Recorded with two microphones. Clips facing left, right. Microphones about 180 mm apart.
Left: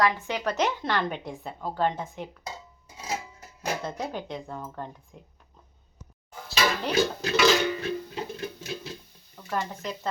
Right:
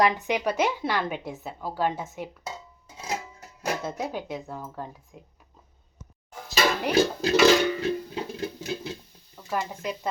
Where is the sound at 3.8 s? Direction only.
5° right (ahead or behind).